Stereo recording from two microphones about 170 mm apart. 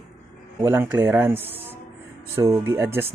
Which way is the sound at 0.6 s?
15° right (ahead or behind).